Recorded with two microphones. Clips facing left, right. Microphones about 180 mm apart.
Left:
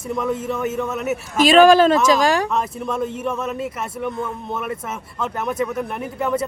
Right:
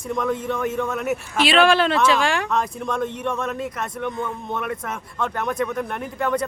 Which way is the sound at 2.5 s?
5° left (ahead or behind).